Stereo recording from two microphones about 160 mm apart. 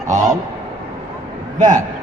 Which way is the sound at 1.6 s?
50° right (ahead or behind).